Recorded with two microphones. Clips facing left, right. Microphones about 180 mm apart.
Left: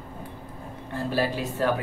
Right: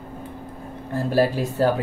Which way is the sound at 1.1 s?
40° right (ahead or behind).